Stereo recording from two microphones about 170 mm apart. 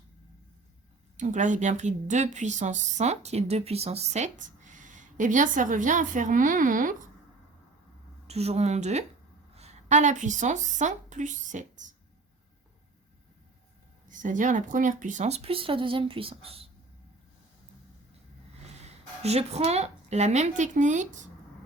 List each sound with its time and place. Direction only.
1.1 s a woman's voice: 45° right (ahead or behind)
8.3 s a woman's voice: 40° right (ahead or behind)
14.1 s speech: 50° right (ahead or behind); by 16.6 s 35° right (ahead or behind)
18.9 s a woman's voice: 40° right (ahead or behind)